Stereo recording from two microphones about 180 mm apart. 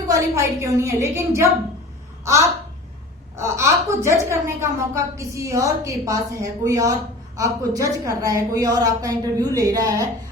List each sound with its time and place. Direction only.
0.1 s a woman's voice: 15° right (ahead or behind)
3.3 s a woman's voice: 15° right (ahead or behind)